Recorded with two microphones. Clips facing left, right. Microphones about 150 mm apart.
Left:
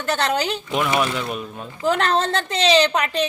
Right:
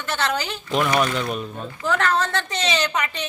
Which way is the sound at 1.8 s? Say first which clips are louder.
Left 2 dB; 30° left (ahead or behind).